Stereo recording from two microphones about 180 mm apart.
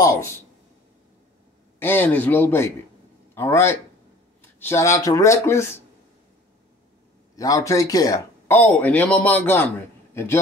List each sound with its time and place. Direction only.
1.8 s a man's voice: 10° left (ahead or behind)
7.3 s speech: 20° left (ahead or behind)
8.5 s a man's voice: 10° left (ahead or behind)